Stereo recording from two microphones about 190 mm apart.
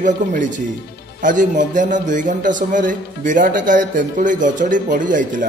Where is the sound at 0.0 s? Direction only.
40° right (ahead or behind).